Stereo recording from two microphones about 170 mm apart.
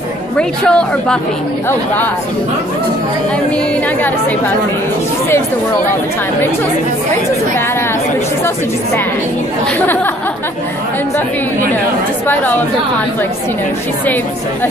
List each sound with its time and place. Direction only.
0.4 s a woman's voice: 5° left (ahead or behind)